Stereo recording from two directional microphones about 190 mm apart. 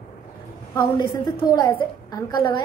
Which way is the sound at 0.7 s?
20° left (ahead or behind).